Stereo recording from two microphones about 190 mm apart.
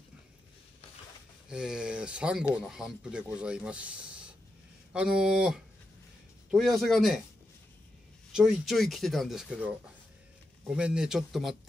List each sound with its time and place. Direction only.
1.5 s speech: 5° right (ahead or behind)
8.3 s speech: 5° right (ahead or behind)
10.8 s speech: 5° right (ahead or behind)